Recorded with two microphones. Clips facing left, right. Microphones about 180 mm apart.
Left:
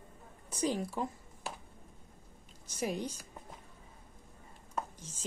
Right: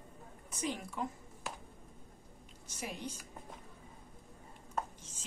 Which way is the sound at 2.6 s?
40° left (ahead or behind).